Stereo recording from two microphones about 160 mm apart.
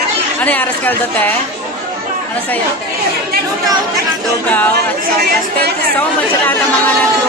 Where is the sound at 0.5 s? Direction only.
10° left (ahead or behind).